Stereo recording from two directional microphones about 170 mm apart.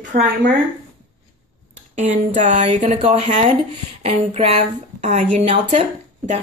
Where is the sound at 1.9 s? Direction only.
45° right (ahead or behind).